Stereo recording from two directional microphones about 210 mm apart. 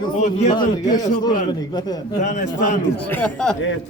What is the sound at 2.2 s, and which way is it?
Speech, 35° left (ahead or behind).